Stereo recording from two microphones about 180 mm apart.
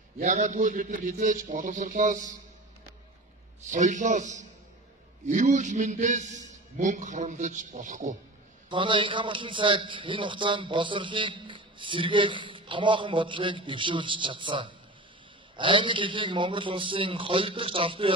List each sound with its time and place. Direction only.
0.2 s a man's voice: 45° right (ahead or behind)
3.6 s a man's voice: 45° right (ahead or behind)
8.6 s a man's voice: 25° right (ahead or behind)